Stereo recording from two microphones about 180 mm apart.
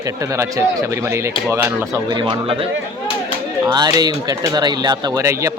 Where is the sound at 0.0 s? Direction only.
15° right (ahead or behind).